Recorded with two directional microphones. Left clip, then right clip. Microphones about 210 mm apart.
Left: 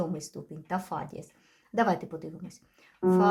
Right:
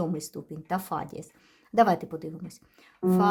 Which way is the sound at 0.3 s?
30° right (ahead or behind).